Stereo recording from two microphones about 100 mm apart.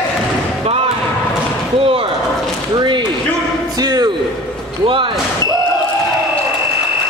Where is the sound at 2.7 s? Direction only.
50° right (ahead or behind).